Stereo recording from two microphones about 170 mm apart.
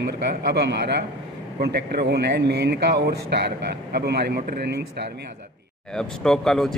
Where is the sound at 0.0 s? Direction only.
70° right (ahead or behind).